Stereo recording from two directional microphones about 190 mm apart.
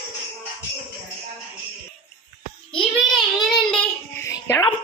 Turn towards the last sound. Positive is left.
turn(degrees=20)  # may be behind; listen again after turning